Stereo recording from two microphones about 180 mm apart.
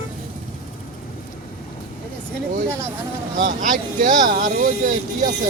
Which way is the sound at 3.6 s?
45° right (ahead or behind).